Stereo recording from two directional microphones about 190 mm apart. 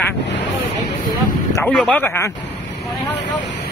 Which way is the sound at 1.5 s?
15° left (ahead or behind).